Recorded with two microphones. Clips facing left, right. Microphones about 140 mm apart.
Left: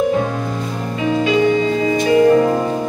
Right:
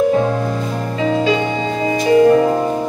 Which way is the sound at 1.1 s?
30° right (ahead or behind).